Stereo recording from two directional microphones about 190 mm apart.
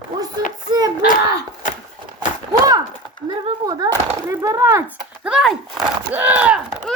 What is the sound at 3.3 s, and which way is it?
Speech, 20° right (ahead or behind).